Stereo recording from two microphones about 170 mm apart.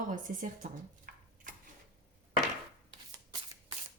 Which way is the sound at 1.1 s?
60° right (ahead or behind).